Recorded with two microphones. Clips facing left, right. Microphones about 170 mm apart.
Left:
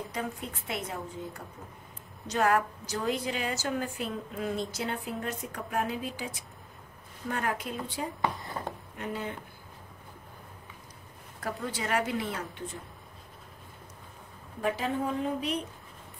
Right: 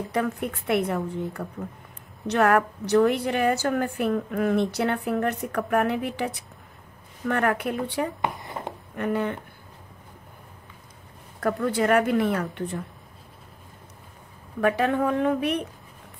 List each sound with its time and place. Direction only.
0.1 s a woman's voice: 65° right (ahead or behind)
8.2 s a sound: 20° right (ahead or behind)
8.9 s a woman's voice: 60° right (ahead or behind)
11.4 s a woman's voice: 60° right (ahead or behind)
14.6 s a woman's voice: 65° right (ahead or behind)